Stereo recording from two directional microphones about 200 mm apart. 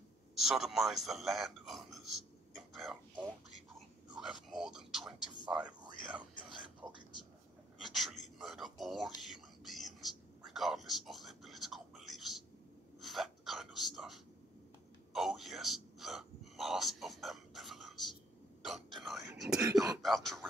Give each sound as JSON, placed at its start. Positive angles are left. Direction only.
{"t": 0.4, "sound": "speech", "side_deg": 0}
{"t": 2.5, "sound": "a sound", "side_deg": 0}
{"t": 3.7, "sound": "speech", "side_deg": 0}
{"t": 7.8, "sound": "speech", "side_deg": 0}
{"t": 9.2, "sound": "whispering", "side_deg": 0}
{"t": 13.0, "sound": "a sound", "side_deg": 0}
{"t": 18.6, "sound": "whispering", "side_deg": 0}
{"t": 19.6, "sound": "throat clearing", "side_deg": -15}
{"t": 20.0, "sound": "speech", "side_deg": 0}